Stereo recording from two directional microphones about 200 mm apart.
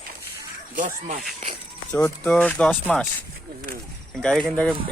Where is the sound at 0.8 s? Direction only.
40° right (ahead or behind).